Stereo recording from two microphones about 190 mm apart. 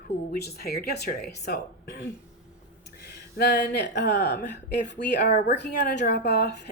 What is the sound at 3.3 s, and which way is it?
A woman's voice, 60° left (ahead or behind).